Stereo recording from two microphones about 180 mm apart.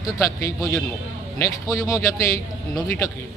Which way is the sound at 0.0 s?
15° left (ahead or behind).